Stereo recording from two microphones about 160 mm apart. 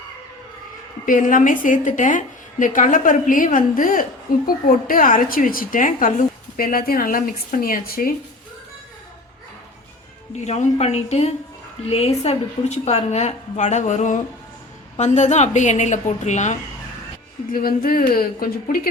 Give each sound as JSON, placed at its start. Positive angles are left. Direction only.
{"t": 1.0, "sound": "a woman's voice", "side_deg": 55}
{"t": 10.4, "sound": "a woman's voice", "side_deg": 45}
{"t": 17.5, "sound": "a woman's voice", "side_deg": 65}